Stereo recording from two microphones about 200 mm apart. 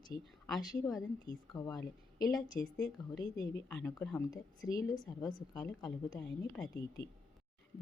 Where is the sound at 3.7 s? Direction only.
10° left (ahead or behind).